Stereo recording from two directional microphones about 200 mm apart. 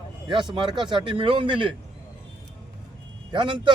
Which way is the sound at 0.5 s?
20° right (ahead or behind).